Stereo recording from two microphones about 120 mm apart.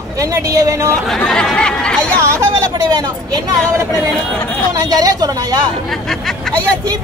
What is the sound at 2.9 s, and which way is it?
Speech, 35° right (ahead or behind).